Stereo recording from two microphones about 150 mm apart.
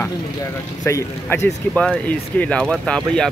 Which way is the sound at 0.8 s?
20° left (ahead or behind).